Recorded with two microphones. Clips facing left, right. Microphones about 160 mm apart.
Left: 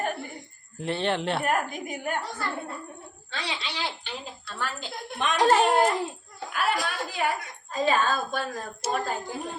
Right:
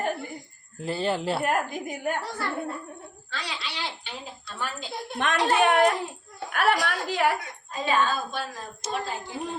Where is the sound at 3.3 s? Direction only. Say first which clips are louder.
Left 2 dB; 25° left (ahead or behind).